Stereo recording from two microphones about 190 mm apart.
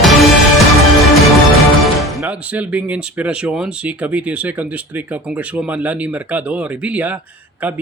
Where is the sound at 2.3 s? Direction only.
5° right (ahead or behind).